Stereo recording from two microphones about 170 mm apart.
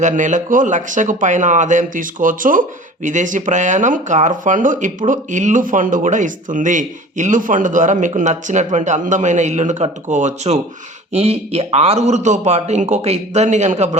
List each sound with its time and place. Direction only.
0.0 s speech: 45° right (ahead or behind)